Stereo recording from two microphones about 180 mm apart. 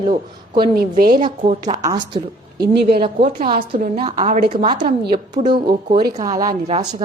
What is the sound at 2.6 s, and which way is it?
Speech, 60° right (ahead or behind).